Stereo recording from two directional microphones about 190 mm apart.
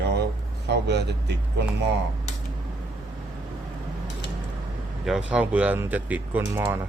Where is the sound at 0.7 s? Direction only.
65° right (ahead or behind).